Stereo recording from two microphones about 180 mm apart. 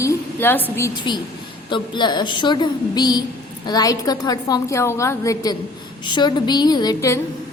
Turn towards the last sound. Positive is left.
turn(degrees=15)  # may be behind; listen again after turning